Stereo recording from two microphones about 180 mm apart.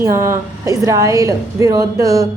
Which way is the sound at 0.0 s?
15° right (ahead or behind).